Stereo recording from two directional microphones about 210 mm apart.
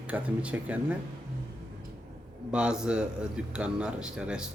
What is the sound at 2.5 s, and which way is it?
A man's voice, 5° right (ahead or behind).